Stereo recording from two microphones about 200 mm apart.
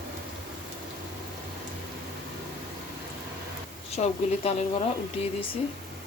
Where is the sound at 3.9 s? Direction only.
30° left (ahead or behind).